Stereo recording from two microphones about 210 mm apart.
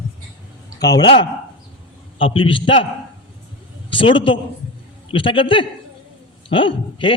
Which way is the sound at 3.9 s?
25° left (ahead or behind).